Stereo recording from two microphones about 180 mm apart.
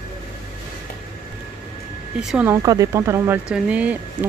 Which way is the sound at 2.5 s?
20° right (ahead or behind).